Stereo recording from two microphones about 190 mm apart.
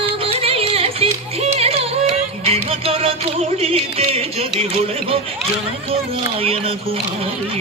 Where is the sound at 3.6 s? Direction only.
30° right (ahead or behind).